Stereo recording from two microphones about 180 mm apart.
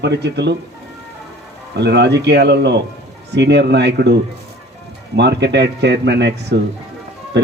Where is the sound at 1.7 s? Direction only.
70° right (ahead or behind).